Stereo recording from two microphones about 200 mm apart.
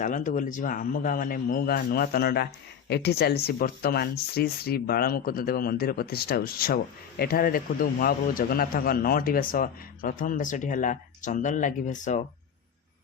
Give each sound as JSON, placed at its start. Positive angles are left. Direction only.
{"t": 0.0, "sound": "speech", "side_deg": 40}